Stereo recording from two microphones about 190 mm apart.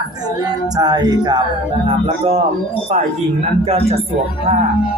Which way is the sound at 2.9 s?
35° right (ahead or behind).